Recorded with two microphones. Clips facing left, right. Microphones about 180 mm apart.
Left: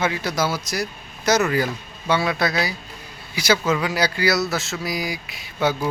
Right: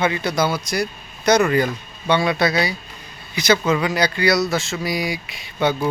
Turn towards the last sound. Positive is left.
turn(degrees=5)  # may be behind; listen again after turning